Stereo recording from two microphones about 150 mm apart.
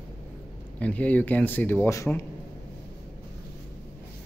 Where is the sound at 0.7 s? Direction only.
10° left (ahead or behind).